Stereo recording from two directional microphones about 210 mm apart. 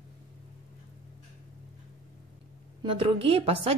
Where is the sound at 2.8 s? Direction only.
25° right (ahead or behind).